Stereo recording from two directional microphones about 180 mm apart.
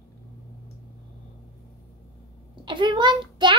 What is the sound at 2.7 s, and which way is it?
Child singing, 25° right (ahead or behind).